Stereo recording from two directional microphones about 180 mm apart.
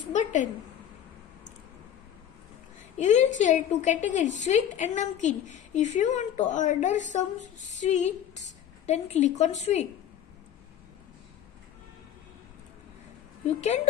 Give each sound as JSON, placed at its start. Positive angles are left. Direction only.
{"t": 0.1, "sound": "a woman's voice", "side_deg": 40}
{"t": 3.0, "sound": "a woman's voice", "side_deg": 40}